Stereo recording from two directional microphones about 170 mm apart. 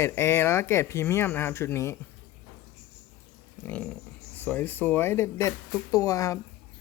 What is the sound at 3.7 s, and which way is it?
Speech, 10° left (ahead or behind).